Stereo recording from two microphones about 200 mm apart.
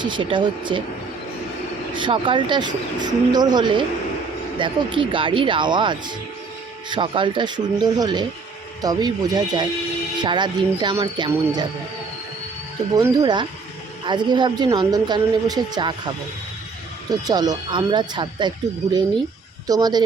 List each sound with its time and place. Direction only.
0.0 s speech: 25° right (ahead or behind)
1.9 s speech: 25° right (ahead or behind)
12.9 s speech: 20° right (ahead or behind)
17.1 s speech: 20° right (ahead or behind)
19.6 s speech: 20° right (ahead or behind)